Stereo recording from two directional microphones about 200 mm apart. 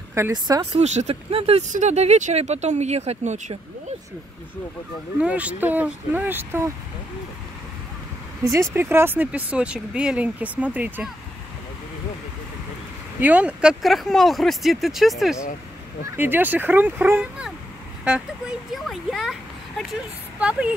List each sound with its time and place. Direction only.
0.1 s speech: 15° right (ahead or behind)
0.7 s speech: 35° right (ahead or behind)
5.2 s speech: 5° right (ahead or behind)
8.5 s speech: 15° right (ahead or behind)
13.2 s speech: 10° right (ahead or behind)
18.7 s speech: centre (ahead or behind)